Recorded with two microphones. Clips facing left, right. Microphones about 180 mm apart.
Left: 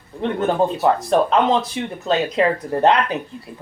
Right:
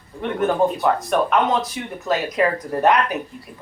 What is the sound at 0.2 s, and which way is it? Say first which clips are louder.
Speech: even; 25° left (ahead or behind).